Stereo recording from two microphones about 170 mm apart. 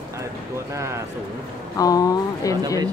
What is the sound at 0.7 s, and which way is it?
Speech, 15° right (ahead or behind).